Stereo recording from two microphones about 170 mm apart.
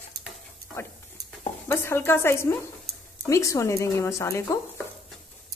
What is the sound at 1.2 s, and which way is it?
Speech, 15° left (ahead or behind).